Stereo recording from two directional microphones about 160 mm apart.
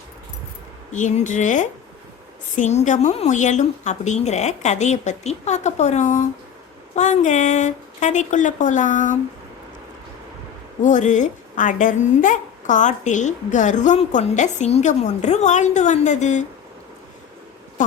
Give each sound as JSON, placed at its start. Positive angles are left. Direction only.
{"t": 0.9, "sound": "a woman's voice", "side_deg": 50}
{"t": 10.8, "sound": "a woman's voice", "side_deg": 50}
{"t": 17.8, "sound": "a woman's voice", "side_deg": 50}